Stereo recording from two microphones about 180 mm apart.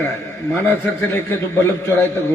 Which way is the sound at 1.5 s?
15° left (ahead or behind).